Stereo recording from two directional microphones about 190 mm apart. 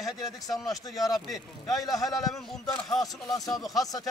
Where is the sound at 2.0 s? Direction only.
Centre (ahead or behind).